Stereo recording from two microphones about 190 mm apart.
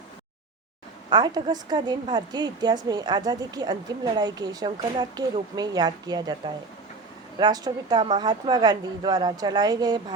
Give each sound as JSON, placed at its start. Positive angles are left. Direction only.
{"t": 1.1, "sound": "a woman's voice", "side_deg": -20}